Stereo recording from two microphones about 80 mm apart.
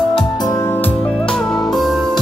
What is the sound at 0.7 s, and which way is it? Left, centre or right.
Music, left.